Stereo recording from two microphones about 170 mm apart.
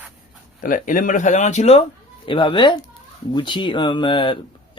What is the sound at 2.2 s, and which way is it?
Speech, 30° left (ahead or behind).